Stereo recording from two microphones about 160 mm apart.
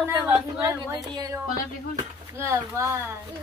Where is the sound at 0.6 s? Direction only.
20° right (ahead or behind).